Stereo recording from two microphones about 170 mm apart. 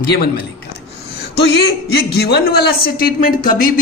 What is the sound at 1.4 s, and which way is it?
A man's voice, 75° left (ahead or behind).